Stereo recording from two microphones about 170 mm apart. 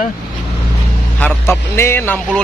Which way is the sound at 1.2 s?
10° left (ahead or behind).